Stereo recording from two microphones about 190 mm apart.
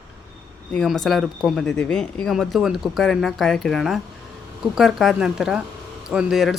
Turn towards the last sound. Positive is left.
turn(degrees=0)  # may be behind; listen again after turning